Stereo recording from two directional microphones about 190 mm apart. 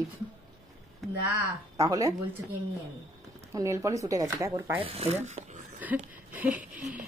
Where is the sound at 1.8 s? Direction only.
20° right (ahead or behind).